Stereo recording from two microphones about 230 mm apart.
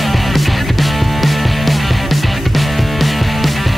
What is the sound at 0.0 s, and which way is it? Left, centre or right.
Music, centre.